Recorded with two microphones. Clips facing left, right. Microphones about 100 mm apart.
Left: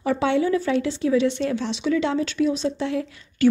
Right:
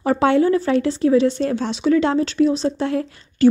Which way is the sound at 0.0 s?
45° right (ahead or behind).